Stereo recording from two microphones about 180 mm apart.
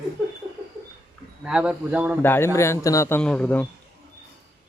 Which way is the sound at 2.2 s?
10° left (ahead or behind).